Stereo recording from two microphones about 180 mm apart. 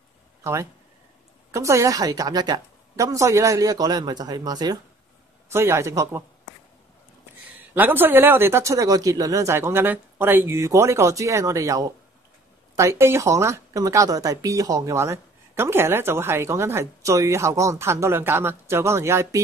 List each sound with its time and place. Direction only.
0.4 s a woman's voice: 15° right (ahead or behind)
7.5 s speech: 10° right (ahead or behind)